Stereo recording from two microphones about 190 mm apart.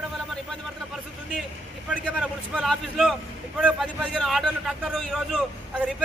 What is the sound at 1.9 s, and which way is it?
A man's voice, centre (ahead or behind).